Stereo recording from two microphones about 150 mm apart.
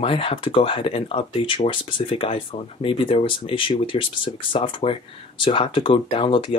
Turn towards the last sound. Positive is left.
turn(degrees=35)  # may be behind; listen again after turning